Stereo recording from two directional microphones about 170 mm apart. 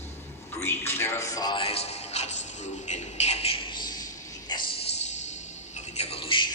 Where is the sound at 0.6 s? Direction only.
15° left (ahead or behind).